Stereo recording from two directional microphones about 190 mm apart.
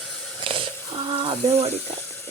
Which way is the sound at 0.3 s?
25° right (ahead or behind).